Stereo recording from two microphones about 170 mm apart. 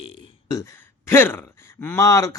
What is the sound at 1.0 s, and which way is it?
Speech, 15° left (ahead or behind).